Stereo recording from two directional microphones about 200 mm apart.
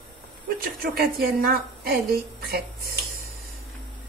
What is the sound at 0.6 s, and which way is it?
A woman's voice, 50° right (ahead or behind).